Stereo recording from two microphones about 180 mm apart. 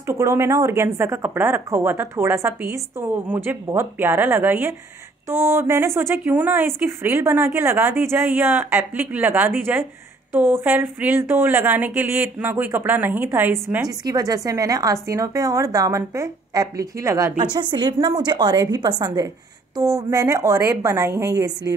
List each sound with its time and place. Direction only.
0.0 s speech: 15° right (ahead or behind)
14.0 s a woman's voice: 20° right (ahead or behind)